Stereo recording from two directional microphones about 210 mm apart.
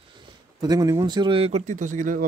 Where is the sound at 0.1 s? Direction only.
20° right (ahead or behind).